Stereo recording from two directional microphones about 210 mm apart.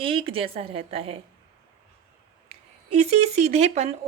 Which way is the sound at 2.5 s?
30° right (ahead or behind).